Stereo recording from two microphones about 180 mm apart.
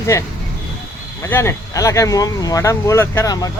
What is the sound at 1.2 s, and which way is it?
Speech, 15° left (ahead or behind).